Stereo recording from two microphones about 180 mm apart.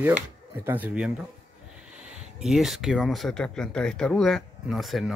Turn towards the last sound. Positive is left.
turn(degrees=0)  # may be behind; listen again after turning